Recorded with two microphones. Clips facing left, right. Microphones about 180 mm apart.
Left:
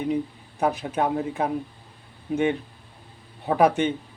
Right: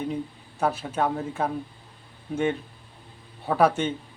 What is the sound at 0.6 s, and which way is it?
Speech, 15° left (ahead or behind).